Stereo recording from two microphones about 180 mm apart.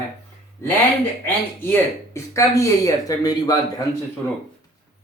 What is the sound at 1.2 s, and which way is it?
Speech, 15° left (ahead or behind).